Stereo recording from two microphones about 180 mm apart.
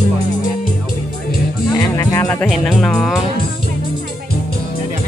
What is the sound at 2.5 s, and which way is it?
Speech, centre (ahead or behind).